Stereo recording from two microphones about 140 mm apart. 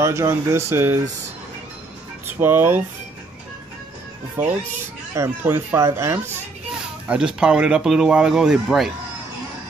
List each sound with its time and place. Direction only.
0.0 s speech: 20° right (ahead or behind)
2.2 s speech: 15° right (ahead or behind)
4.4 s speech: 15° right (ahead or behind)
7.1 s speech: 5° right (ahead or behind)